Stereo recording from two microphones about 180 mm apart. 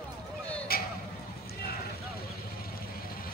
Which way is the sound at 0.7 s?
55° left (ahead or behind).